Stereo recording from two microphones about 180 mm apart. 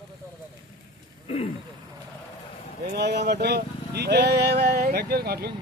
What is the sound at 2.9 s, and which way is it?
A man's voice, 65° right (ahead or behind).